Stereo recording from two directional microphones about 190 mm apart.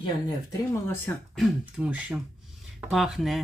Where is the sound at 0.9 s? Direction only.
10° left (ahead or behind).